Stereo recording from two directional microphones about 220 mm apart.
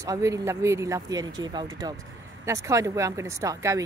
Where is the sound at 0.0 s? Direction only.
15° right (ahead or behind).